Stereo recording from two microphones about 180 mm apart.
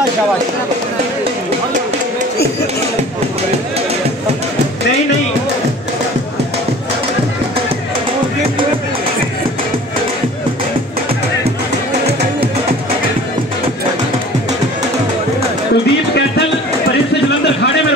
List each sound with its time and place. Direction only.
15.7 s music: 75° left (ahead or behind)